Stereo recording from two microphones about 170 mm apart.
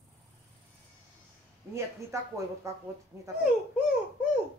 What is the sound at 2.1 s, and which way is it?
Speech, 15° right (ahead or behind).